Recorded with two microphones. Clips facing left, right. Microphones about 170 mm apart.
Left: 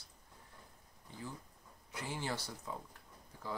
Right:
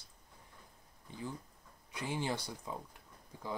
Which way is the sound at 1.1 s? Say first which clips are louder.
Right 4 dB; 15° right (ahead or behind).